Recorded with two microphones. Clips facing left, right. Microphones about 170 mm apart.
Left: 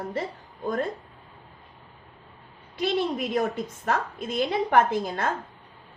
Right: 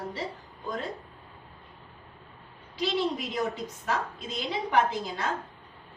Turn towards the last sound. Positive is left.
turn(degrees=55)  # may be behind; listen again after turning